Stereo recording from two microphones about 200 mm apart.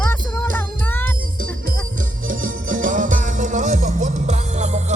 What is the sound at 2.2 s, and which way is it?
Music, 40° right (ahead or behind).